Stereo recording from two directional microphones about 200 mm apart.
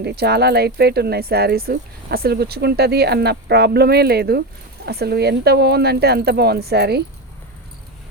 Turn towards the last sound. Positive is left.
turn(degrees=-55)  # may be behind; listen again after turning